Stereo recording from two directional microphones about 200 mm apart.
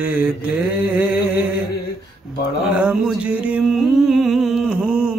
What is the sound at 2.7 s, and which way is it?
Music, 5° right (ahead or behind).